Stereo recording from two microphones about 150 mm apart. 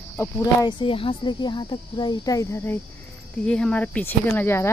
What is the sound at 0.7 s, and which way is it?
Speech, 35° left (ahead or behind).